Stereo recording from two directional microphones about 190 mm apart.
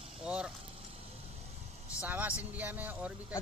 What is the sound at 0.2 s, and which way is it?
Vehicle, 5° right (ahead or behind).